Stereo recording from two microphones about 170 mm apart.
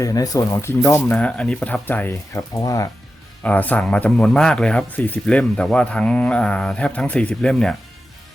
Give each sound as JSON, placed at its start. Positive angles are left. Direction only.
{"t": 0.0, "sound": "a man's voice", "side_deg": 20}